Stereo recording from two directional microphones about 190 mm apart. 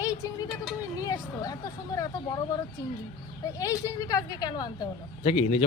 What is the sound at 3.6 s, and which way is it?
Speech, 20° left (ahead or behind).